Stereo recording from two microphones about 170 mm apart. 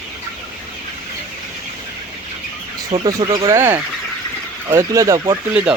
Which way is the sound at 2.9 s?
25° right (ahead or behind).